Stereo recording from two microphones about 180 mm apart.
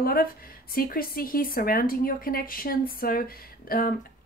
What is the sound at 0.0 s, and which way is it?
Speech, 55° left (ahead or behind).